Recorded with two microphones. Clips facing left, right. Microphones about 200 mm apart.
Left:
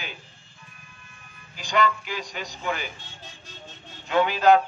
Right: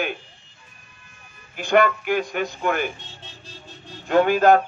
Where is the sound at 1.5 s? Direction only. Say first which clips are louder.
Right 6 dB; 55° right (ahead or behind).